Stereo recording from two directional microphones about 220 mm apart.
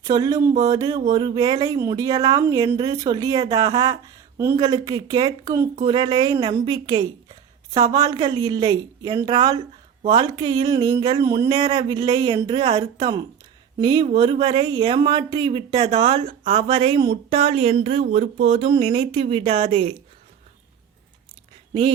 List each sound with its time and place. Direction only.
0.0 s speech: 15° right (ahead or behind)
21.7 s speech: 25° right (ahead or behind)